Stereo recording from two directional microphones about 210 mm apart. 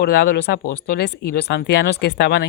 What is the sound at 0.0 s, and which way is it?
Speech, 50° left (ahead or behind).